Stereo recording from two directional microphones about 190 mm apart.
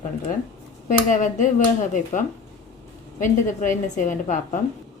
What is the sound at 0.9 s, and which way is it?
Speech, 40° left (ahead or behind).